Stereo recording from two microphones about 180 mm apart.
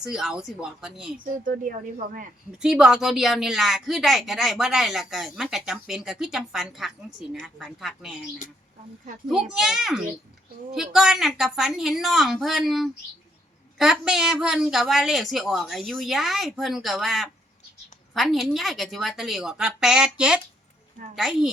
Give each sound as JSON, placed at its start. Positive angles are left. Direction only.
{"t": 0.0, "sound": "a woman's voice", "side_deg": 0}
{"t": 1.2, "sound": "speech", "side_deg": -50}
{"t": 2.6, "sound": "a woman's voice", "side_deg": -5}
{"t": 9.3, "sound": "a woman's voice", "side_deg": -5}